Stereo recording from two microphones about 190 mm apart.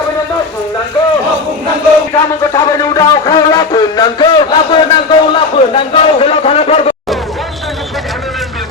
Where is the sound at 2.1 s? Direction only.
15° left (ahead or behind).